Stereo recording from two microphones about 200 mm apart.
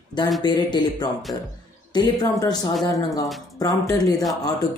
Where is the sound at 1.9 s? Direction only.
20° left (ahead or behind).